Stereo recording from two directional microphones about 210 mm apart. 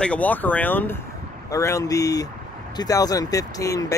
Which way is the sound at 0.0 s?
5° left (ahead or behind).